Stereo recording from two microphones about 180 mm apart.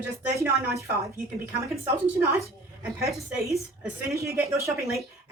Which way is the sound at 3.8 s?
15° right (ahead or behind).